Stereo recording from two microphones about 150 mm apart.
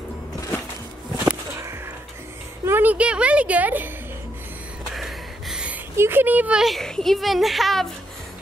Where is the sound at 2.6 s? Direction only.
15° right (ahead or behind).